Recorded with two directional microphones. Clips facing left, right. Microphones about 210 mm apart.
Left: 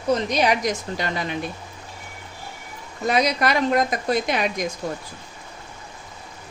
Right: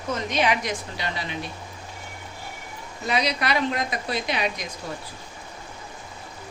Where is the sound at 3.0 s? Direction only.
45° left (ahead or behind).